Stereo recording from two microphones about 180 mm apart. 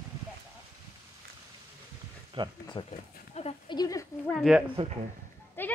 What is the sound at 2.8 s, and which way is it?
Speech, 25° left (ahead or behind).